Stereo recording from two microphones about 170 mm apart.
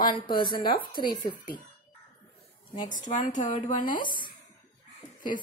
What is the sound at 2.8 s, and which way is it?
Speech, 50° left (ahead or behind).